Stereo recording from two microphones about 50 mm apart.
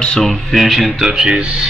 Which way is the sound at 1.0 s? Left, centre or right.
Centre.